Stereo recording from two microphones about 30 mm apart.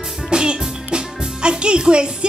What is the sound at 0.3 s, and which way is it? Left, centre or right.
Music, right.